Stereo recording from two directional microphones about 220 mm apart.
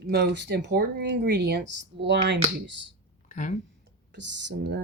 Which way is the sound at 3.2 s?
35° left (ahead or behind).